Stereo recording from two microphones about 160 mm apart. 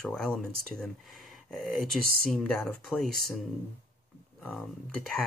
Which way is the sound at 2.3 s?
5° left (ahead or behind).